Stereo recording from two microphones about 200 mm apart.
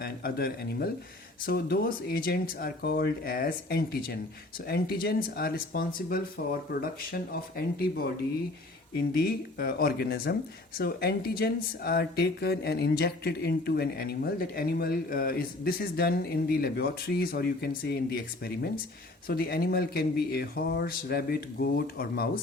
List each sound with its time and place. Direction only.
0.0 s speech: 50° left (ahead or behind)